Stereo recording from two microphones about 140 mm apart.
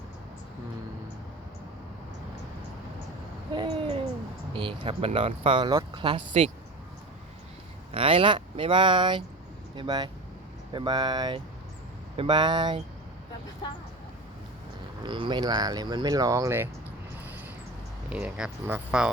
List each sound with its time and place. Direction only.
3.5 s hoot: 30° right (ahead or behind)
4.5 s speech: 40° right (ahead or behind)
7.9 s speech: 40° right (ahead or behind)
13.6 s speech: 30° left (ahead or behind)
15.0 s speech: 35° right (ahead or behind)
18.1 s speech: 5° right (ahead or behind)